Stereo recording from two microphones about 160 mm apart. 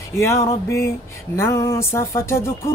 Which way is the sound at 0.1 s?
15° left (ahead or behind).